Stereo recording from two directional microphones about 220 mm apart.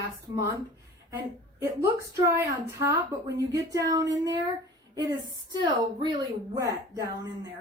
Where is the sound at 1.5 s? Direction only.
15° right (ahead or behind).